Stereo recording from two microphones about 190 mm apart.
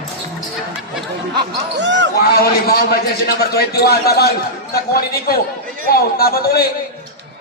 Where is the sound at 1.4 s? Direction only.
70° right (ahead or behind).